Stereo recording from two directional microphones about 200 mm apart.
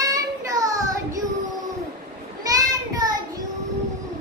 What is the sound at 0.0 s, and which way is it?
Child singing, 15° right (ahead or behind).